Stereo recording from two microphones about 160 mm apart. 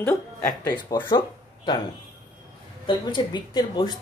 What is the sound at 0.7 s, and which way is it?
Speech, 25° left (ahead or behind).